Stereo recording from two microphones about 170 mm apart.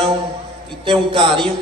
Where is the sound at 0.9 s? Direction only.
30° right (ahead or behind).